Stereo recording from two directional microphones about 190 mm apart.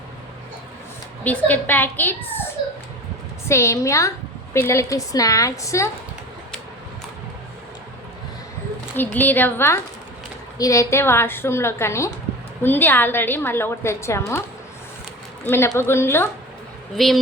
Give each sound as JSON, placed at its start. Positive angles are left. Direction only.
{"t": 1.2, "sound": "a woman's voice", "side_deg": 10}
{"t": 3.5, "sound": "a woman's voice", "side_deg": 15}
{"t": 9.0, "sound": "a woman's voice", "side_deg": 10}
{"t": 15.4, "sound": "a woman's voice", "side_deg": 15}
{"t": 17.0, "sound": "speech", "side_deg": 0}